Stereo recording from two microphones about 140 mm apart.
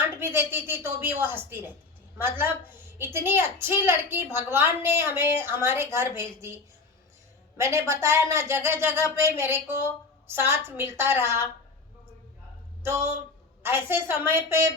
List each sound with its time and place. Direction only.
0.2 s a woman's voice: 15° right (ahead or behind)
12.8 s a woman's voice: 20° right (ahead or behind)